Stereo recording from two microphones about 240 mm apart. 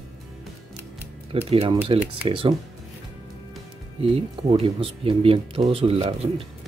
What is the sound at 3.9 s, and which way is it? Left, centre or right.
Speech, right.